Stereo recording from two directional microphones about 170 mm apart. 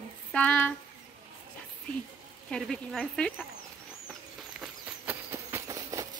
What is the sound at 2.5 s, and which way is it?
Speech, centre (ahead or behind).